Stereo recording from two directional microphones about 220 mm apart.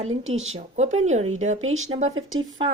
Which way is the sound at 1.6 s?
65° right (ahead or behind).